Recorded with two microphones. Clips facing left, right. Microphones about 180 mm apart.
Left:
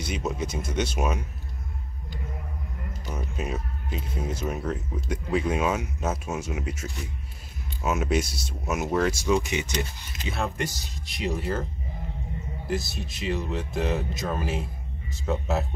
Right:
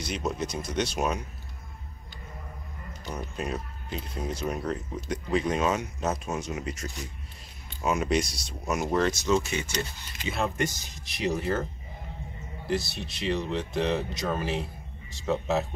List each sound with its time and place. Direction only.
0.0 s speech: 5° left (ahead or behind)
3.1 s speech: 5° left (ahead or behind)
10.3 s speech: centre (ahead or behind)
12.6 s speech: 45° left (ahead or behind)
13.3 s speech: 5° left (ahead or behind)